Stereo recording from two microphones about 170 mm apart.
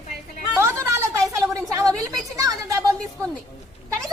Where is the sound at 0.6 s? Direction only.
15° right (ahead or behind).